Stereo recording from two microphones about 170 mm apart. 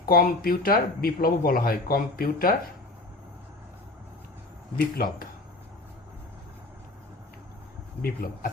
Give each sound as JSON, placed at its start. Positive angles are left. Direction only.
{"t": 0.0, "sound": "speech", "side_deg": 60}
{"t": 5.0, "sound": "speech", "side_deg": 60}
{"t": 8.0, "sound": "speech", "side_deg": 60}